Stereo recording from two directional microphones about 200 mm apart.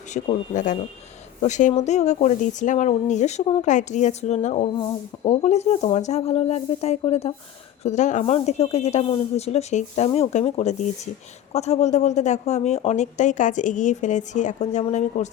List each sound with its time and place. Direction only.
0.1 s speech: 40° left (ahead or behind)